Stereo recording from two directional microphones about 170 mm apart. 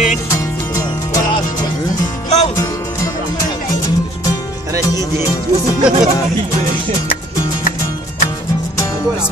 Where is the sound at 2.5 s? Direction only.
20° left (ahead or behind).